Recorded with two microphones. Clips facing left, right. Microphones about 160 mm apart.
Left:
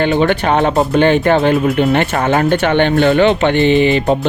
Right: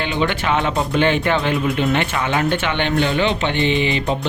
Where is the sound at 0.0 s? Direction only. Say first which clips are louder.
Left 8 dB; 50° left (ahead or behind).